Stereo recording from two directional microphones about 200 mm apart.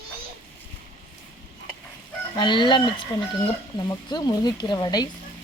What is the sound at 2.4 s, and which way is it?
Speech, 25° left (ahead or behind).